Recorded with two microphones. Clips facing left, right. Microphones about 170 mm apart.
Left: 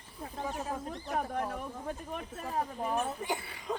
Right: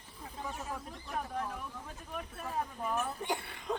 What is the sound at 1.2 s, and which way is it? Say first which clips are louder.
Speech: left 3 dB; 45° left (ahead or behind).